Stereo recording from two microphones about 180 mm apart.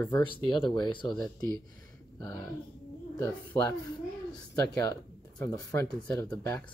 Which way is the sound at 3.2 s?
15° left (ahead or behind).